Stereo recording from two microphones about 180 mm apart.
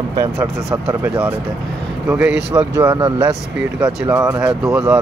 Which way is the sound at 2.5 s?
20° right (ahead or behind).